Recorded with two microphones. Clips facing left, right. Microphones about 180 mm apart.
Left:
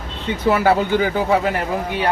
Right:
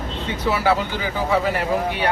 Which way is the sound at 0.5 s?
50° left (ahead or behind).